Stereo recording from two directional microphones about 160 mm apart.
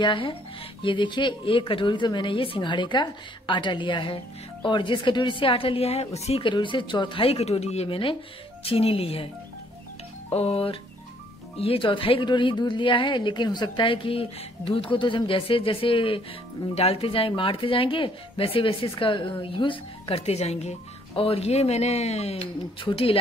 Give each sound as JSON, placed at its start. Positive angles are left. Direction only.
{"t": 0.0, "sound": "a woman's voice", "side_deg": 30}
{"t": 10.3, "sound": "speech", "side_deg": 40}